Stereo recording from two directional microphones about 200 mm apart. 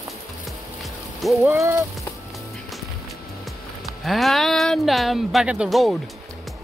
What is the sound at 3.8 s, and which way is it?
Speech, centre (ahead or behind).